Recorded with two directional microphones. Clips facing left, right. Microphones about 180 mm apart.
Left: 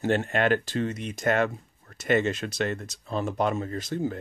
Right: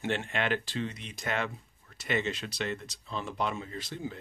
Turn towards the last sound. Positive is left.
turn(degrees=45)  # may be behind; listen again after turning